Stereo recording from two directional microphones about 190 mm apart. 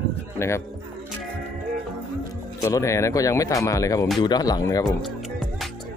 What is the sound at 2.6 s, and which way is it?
Speech, 15° left (ahead or behind).